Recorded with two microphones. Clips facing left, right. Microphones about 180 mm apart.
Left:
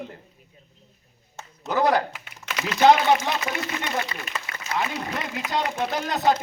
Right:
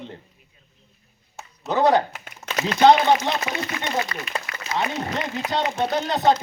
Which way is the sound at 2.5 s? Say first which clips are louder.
Right 4 dB; 40° right (ahead or behind).